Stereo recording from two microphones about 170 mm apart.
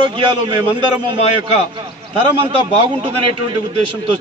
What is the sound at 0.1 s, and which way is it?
Speech, 30° right (ahead or behind).